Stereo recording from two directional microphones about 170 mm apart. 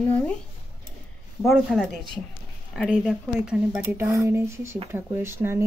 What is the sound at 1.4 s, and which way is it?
Speech, centre (ahead or behind).